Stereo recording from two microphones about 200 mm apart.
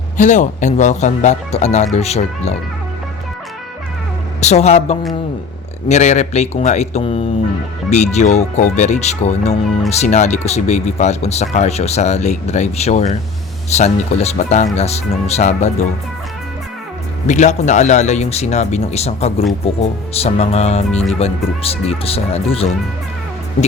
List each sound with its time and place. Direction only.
0.2 s speech: 40° left (ahead or behind)
4.4 s speech: 35° left (ahead or behind)
17.2 s speech: 35° left (ahead or behind)